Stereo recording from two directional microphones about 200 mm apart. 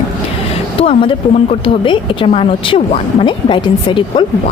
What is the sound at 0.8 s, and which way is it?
A woman's voice, 30° left (ahead or behind).